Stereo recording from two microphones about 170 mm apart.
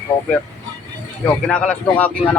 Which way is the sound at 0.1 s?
35° left (ahead or behind).